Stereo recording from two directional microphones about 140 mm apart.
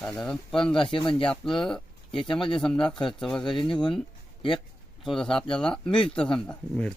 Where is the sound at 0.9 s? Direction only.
35° left (ahead or behind).